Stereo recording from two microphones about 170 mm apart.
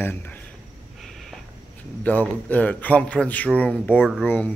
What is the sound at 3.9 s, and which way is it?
Speech, 5° right (ahead or behind).